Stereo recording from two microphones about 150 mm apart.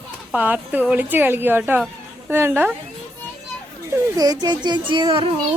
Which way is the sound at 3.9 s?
25° right (ahead or behind).